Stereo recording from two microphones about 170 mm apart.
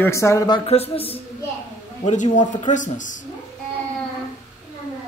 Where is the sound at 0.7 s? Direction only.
35° left (ahead or behind).